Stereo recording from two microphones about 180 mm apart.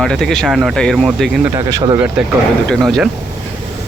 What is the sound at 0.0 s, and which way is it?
Speech, centre (ahead or behind).